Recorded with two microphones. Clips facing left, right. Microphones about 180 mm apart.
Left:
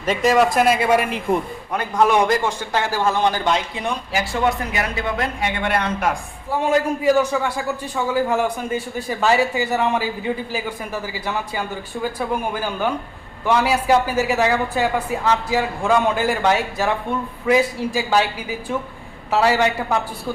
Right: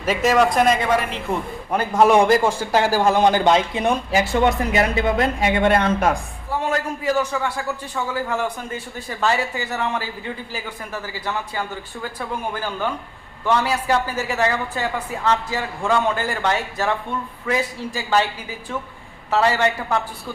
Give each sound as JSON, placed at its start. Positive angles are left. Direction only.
{"t": 0.0, "sound": "a man's voice", "side_deg": -5}
{"t": 1.7, "sound": "a man's voice", "side_deg": -5}
{"t": 3.5, "sound": "speech", "side_deg": -25}
{"t": 6.5, "sound": "a man's voice", "side_deg": 15}
{"t": 19.3, "sound": "a man's voice", "side_deg": 10}